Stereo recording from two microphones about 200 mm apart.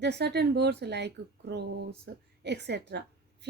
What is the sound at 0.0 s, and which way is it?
Speech, 55° right (ahead or behind).